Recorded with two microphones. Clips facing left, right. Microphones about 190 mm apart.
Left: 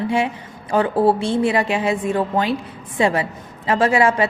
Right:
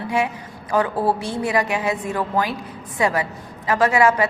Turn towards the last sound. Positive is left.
turn(degrees=25)  # may be behind; listen again after turning